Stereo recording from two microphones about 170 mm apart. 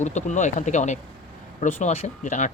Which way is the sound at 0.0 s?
45° left (ahead or behind).